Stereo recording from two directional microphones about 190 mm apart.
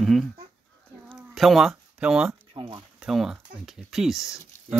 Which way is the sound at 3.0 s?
5° right (ahead or behind).